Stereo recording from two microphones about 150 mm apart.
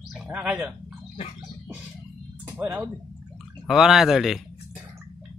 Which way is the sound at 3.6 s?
Centre (ahead or behind).